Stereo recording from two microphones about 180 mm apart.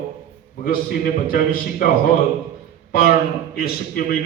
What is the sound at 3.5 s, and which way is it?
Speech, 55° left (ahead or behind).